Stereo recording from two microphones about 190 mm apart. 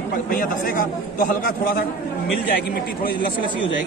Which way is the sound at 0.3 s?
45° left (ahead or behind).